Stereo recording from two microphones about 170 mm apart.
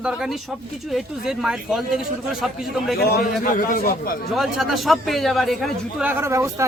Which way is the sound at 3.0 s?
60° left (ahead or behind).